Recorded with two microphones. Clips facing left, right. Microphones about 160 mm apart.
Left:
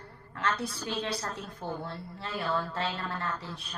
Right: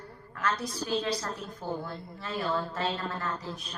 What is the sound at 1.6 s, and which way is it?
Speech, 25° left (ahead or behind).